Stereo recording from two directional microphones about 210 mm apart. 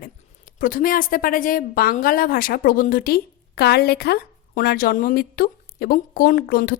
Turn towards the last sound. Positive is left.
turn(degrees=50)  # may be behind; listen again after turning